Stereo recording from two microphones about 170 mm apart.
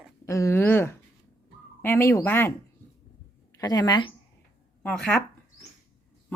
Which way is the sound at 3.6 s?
25° left (ahead or behind).